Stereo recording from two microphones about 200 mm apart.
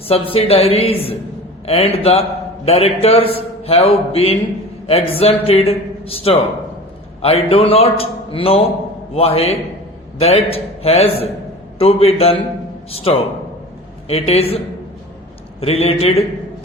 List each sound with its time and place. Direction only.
0.1 s a man's voice: 30° left (ahead or behind)
15.6 s a man's voice: 30° left (ahead or behind)